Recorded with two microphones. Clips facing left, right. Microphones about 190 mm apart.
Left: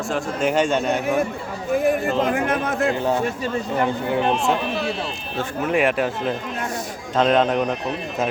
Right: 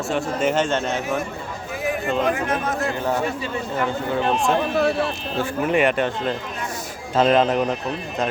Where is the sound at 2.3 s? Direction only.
55° left (ahead or behind).